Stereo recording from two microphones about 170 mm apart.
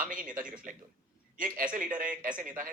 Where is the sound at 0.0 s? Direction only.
55° right (ahead or behind).